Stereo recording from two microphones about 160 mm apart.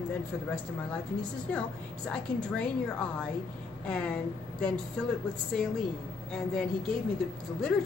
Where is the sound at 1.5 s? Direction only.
10° left (ahead or behind).